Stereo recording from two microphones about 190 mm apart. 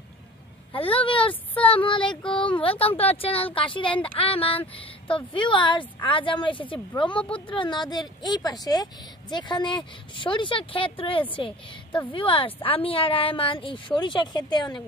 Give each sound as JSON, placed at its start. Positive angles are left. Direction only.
{"t": 0.7, "sound": "speech", "side_deg": 30}